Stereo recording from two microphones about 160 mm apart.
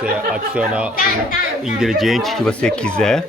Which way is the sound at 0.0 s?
5° right (ahead or behind).